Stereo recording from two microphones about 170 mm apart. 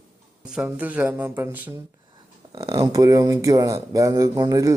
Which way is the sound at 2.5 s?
35° right (ahead or behind).